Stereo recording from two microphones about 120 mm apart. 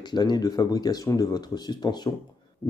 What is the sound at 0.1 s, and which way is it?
Speech, 35° left (ahead or behind).